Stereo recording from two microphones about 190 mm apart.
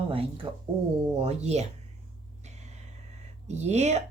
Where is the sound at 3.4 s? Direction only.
35° right (ahead or behind).